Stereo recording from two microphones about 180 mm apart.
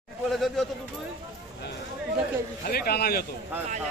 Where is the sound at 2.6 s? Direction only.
55° left (ahead or behind).